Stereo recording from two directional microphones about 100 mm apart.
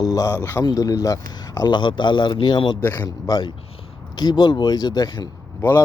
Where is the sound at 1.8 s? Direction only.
50° left (ahead or behind).